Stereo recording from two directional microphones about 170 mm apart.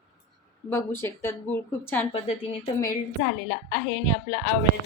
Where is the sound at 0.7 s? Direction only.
15° left (ahead or behind).